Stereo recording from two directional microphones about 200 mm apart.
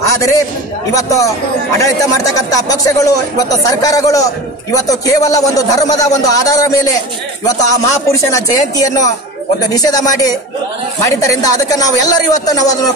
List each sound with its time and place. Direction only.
0.9 s speech: 15° left (ahead or behind)